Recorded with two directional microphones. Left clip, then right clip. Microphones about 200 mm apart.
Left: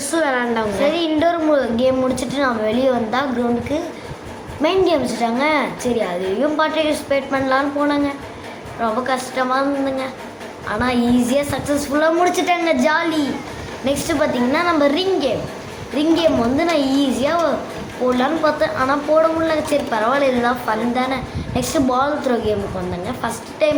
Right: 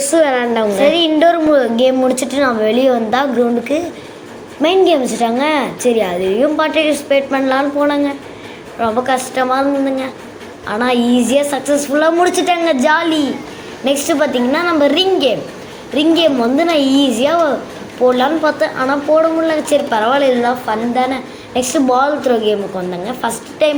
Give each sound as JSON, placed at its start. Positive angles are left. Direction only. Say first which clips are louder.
{"t": 0.1, "sound": "a woman's voice", "louder": "right 5 dB", "side_deg": -20}